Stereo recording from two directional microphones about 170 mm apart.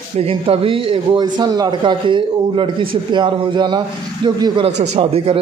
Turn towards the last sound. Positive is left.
turn(degrees=-35)  # may be behind; listen again after turning